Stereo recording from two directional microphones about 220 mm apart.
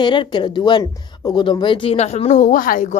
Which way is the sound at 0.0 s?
20° left (ahead or behind).